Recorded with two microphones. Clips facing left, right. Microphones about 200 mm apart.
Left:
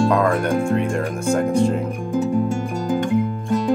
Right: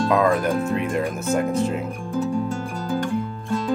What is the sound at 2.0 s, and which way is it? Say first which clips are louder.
Music: left 4 dB; 20° left (ahead or behind).